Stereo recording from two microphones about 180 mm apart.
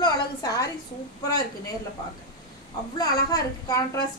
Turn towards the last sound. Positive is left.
turn(degrees=20)  # may be behind; listen again after turning